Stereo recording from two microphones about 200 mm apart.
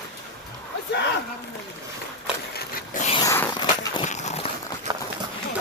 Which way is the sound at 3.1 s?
15° left (ahead or behind).